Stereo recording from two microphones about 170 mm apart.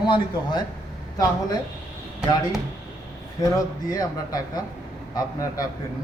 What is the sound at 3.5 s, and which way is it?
A man's voice, 20° left (ahead or behind).